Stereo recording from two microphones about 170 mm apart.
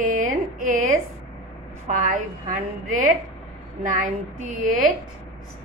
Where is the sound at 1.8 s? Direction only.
50° right (ahead or behind).